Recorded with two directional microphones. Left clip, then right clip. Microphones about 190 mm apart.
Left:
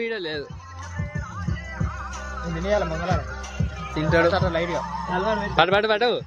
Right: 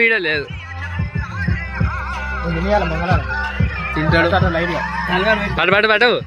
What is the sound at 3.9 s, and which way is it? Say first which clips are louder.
Speech: right 4 dB; 50° left (ahead or behind).